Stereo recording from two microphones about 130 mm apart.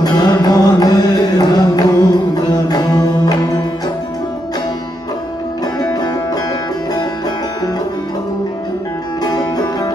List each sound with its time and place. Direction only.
0.0 s music: 30° left (ahead or behind)
5.8 s music: 30° left (ahead or behind)